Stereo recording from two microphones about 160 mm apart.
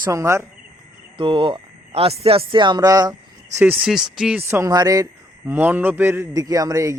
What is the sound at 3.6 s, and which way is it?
Speech, 5° right (ahead or behind).